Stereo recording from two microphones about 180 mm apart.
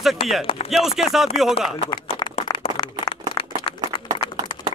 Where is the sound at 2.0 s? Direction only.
30° left (ahead or behind).